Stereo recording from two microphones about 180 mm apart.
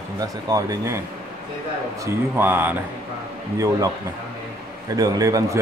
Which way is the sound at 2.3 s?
10° right (ahead or behind).